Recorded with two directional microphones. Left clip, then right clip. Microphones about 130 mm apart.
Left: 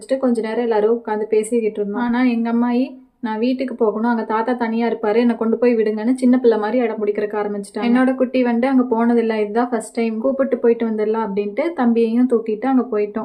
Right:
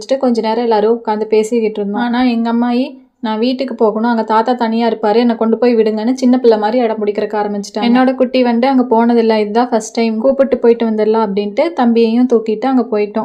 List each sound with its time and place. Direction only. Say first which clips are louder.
0.1 s speech: right 6 dB; 25° right (ahead or behind)
7.8 s speech: right 6 dB; 30° right (ahead or behind)